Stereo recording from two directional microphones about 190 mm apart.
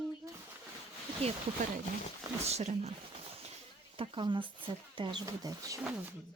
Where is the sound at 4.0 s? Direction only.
25° right (ahead or behind).